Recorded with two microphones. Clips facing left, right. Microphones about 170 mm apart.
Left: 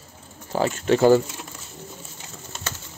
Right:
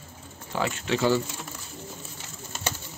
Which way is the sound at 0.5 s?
40° left (ahead or behind).